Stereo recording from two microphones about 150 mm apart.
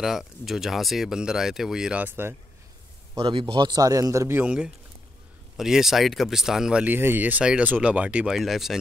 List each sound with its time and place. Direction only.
0.0 s speech: centre (ahead or behind)
3.2 s speech: 35° right (ahead or behind); by 8.7 s centre (ahead or behind)